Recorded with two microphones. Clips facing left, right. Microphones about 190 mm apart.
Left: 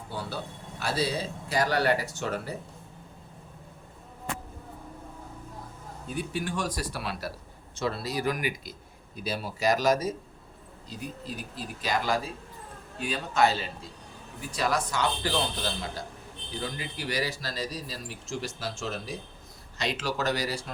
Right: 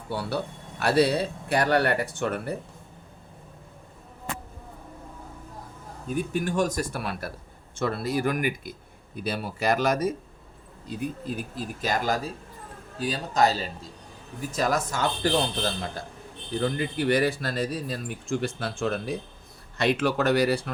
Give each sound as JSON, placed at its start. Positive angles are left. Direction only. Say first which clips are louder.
{"t": 0.1, "sound": "a man's voice", "louder": "right 7 dB", "side_deg": -65}
{"t": 6.1, "sound": "a man's voice", "louder": "right 6 dB", "side_deg": -45}